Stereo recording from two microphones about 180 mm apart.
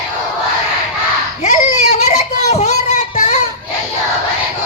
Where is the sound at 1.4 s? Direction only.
40° left (ahead or behind).